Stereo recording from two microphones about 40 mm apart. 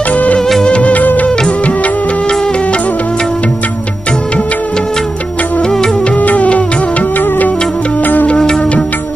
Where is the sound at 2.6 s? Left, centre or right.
Left.